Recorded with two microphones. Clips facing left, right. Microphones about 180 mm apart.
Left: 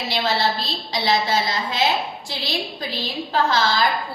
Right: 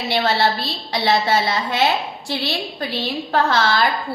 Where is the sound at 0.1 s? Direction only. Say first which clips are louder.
Right 4 dB; 60° right (ahead or behind).